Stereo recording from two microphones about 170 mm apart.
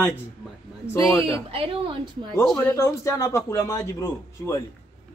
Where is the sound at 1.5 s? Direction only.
35° right (ahead or behind).